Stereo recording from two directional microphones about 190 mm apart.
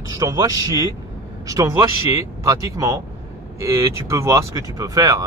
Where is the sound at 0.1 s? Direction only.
20° right (ahead or behind).